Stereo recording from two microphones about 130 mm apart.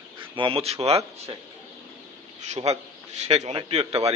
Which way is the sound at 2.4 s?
60° right (ahead or behind).